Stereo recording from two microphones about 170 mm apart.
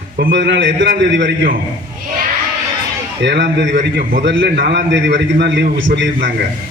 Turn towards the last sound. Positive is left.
turn(degrees=-90)